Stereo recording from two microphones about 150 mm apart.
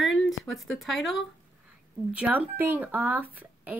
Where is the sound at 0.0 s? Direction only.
Centre (ahead or behind).